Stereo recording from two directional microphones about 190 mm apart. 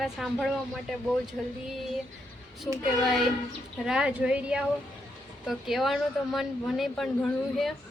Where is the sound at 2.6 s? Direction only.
Centre (ahead or behind).